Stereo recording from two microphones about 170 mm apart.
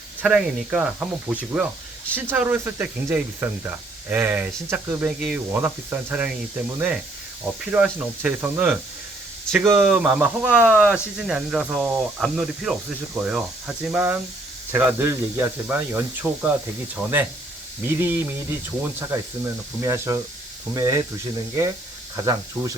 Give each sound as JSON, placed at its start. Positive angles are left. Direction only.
{"t": 0.2, "sound": "speech", "side_deg": -5}
{"t": 22.1, "sound": "speech", "side_deg": -20}